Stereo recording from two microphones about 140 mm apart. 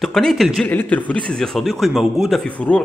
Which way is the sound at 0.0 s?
Centre (ahead or behind).